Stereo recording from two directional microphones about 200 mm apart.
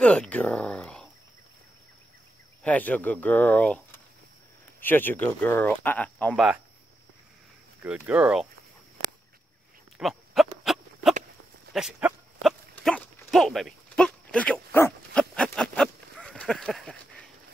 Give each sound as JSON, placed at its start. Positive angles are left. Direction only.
{"t": 0.0, "sound": "speech", "side_deg": 5}
{"t": 2.6, "sound": "speech", "side_deg": 5}
{"t": 7.8, "sound": "speech", "side_deg": -5}
{"t": 9.9, "sound": "goat", "side_deg": 0}
{"t": 11.7, "sound": "dog", "side_deg": 0}